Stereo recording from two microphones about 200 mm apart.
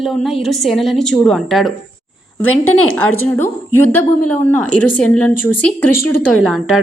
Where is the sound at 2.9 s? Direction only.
10° left (ahead or behind).